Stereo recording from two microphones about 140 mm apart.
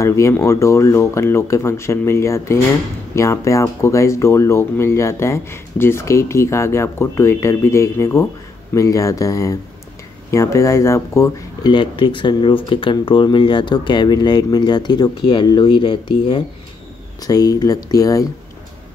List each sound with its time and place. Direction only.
0.0 s speech: 20° left (ahead or behind)